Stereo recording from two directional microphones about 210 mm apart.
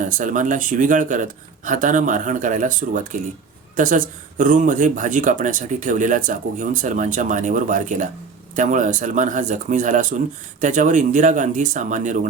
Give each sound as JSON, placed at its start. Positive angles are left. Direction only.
{"t": 0.0, "sound": "speech", "side_deg": -40}